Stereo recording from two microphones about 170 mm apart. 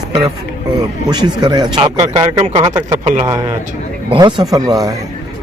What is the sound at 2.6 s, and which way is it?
Speech, 25° right (ahead or behind).